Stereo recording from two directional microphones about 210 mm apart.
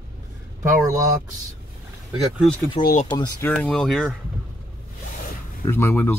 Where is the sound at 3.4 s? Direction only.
5° left (ahead or behind).